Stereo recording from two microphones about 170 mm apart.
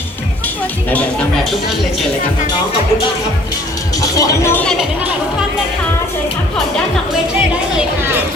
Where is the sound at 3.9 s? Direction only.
20° left (ahead or behind); by 4.8 s 5° left (ahead or behind).